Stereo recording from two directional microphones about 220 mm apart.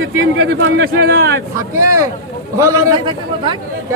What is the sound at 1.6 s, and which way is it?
A man's voice, 15° right (ahead or behind).